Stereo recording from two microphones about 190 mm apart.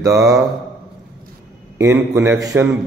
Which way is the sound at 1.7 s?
15° right (ahead or behind).